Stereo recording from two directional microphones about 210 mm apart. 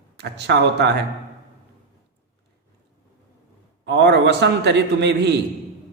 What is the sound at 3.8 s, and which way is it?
A man's voice, 55° right (ahead or behind).